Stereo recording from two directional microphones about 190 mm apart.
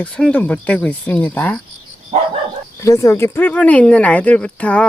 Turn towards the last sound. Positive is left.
turn(degrees=5)  # may be behind; listen again after turning